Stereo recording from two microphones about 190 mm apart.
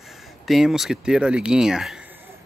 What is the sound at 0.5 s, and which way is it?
Speech, centre (ahead or behind).